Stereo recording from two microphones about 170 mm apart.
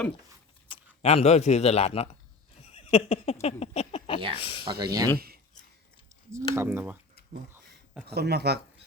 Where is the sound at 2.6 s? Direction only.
35° left (ahead or behind).